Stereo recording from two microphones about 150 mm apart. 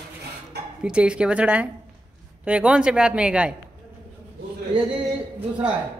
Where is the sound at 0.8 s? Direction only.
5° right (ahead or behind).